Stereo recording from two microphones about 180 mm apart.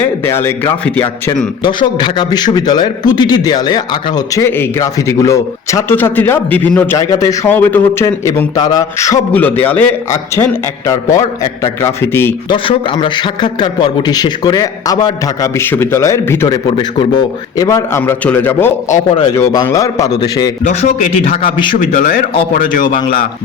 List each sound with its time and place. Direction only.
0.0 s a man's voice: 15° left (ahead or behind)
1.6 s a man's voice: 25° left (ahead or behind)
12.5 s a man's voice: 25° left (ahead or behind)
16.6 s a man's voice: 30° left (ahead or behind)
20.7 s a man's voice: 45° left (ahead or behind)